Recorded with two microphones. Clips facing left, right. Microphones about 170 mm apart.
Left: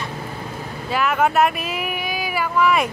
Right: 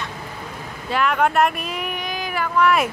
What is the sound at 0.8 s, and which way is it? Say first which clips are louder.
Speech: even; 5° left (ahead or behind).